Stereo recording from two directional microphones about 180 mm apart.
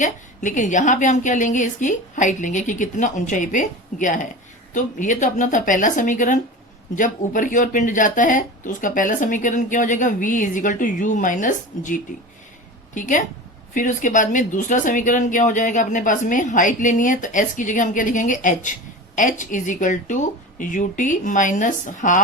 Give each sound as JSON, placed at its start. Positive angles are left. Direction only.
{"t": 0.0, "sound": "a woman's voice", "side_deg": 45}